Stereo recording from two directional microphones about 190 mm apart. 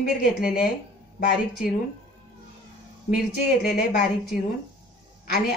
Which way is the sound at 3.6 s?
55° left (ahead or behind).